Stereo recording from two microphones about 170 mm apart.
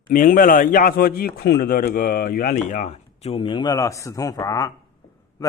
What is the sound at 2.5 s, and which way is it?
Speech, 40° left (ahead or behind).